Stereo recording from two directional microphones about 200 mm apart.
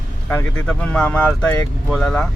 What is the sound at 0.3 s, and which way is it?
Speech, 10° left (ahead or behind).